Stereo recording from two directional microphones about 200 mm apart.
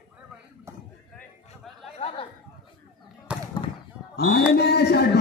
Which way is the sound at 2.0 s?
30° left (ahead or behind).